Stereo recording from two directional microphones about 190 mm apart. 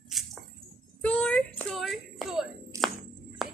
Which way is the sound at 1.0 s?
5° left (ahead or behind).